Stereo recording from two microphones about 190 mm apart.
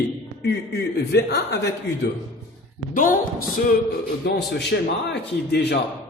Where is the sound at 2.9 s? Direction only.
45° left (ahead or behind).